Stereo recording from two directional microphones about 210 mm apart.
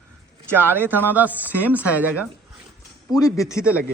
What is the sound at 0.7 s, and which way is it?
Speech, 10° right (ahead or behind).